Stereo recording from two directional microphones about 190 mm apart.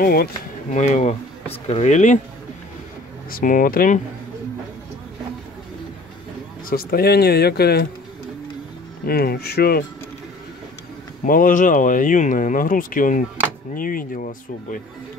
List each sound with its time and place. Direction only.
0.0 s speech: 50° left (ahead or behind)
3.3 s speech: 45° left (ahead or behind)
6.7 s speech: 50° left (ahead or behind)
9.0 s speech: 55° left (ahead or behind)
11.2 s speech: 45° left (ahead or behind)